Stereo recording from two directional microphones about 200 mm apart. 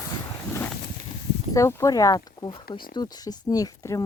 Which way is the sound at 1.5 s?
15° left (ahead or behind).